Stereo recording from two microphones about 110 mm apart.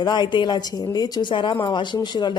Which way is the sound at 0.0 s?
45° left (ahead or behind).